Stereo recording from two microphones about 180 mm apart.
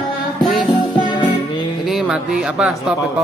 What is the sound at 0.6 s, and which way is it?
Music, 25° left (ahead or behind).